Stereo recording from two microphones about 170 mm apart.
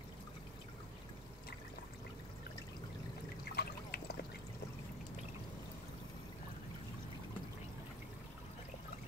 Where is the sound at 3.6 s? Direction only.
75° left (ahead or behind).